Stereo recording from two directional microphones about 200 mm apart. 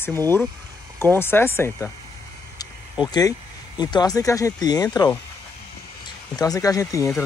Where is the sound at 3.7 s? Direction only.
20° left (ahead or behind).